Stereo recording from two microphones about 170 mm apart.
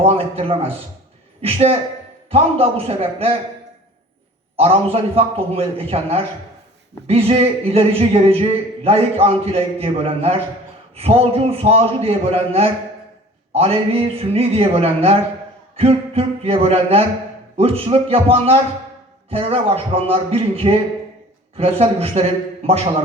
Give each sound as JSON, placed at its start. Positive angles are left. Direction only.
{"t": 0.0, "sound": "speech", "side_deg": -35}
{"t": 4.5, "sound": "speech", "side_deg": -35}